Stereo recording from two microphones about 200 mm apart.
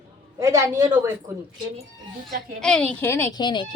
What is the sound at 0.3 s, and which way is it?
A woman's voice, 15° right (ahead or behind).